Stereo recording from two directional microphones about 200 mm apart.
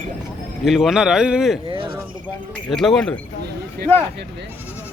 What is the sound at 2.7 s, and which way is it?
Speech, centre (ahead or behind).